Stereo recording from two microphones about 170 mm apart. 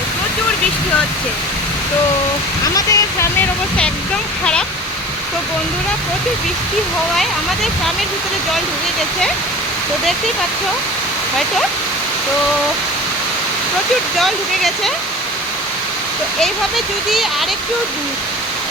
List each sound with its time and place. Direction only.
2.7 s speech: 15° left (ahead or behind)
14.2 s speech: centre (ahead or behind)
16.4 s speech: centre (ahead or behind)